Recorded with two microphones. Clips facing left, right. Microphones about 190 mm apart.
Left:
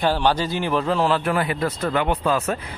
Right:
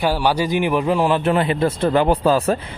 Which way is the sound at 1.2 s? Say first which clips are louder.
Right 5 dB; 25° right (ahead or behind).